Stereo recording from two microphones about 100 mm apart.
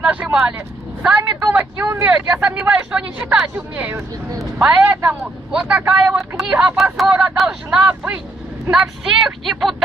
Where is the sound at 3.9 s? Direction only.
35° right (ahead or behind).